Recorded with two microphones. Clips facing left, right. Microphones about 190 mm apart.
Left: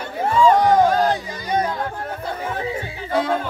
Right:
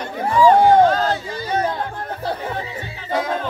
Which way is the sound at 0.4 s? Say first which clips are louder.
Right 3 dB; 25° right (ahead or behind).